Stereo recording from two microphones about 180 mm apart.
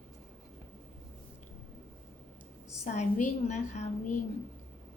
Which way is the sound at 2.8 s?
40° left (ahead or behind).